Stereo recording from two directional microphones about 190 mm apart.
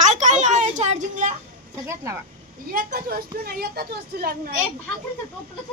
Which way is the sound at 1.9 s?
15° right (ahead or behind).